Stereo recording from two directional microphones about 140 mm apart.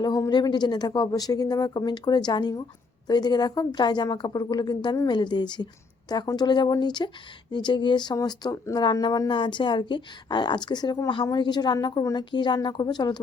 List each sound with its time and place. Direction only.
0.0 s speech: 25° left (ahead or behind)